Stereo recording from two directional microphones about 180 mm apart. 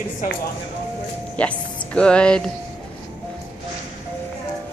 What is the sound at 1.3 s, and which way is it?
Speech, 5° left (ahead or behind).